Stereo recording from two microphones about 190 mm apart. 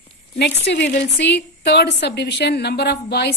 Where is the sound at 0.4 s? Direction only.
65° left (ahead or behind).